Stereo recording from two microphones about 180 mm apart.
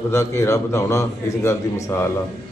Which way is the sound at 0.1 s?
15° left (ahead or behind).